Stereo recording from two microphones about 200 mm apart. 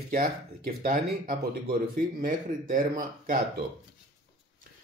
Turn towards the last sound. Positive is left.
turn(degrees=-45)  # may be behind; listen again after turning